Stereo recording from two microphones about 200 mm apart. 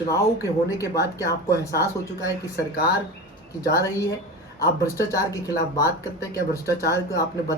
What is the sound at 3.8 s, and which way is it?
Speech, 15° left (ahead or behind).